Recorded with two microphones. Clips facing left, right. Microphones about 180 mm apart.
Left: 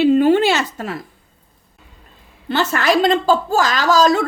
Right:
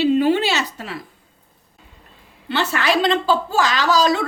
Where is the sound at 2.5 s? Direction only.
45° left (ahead or behind).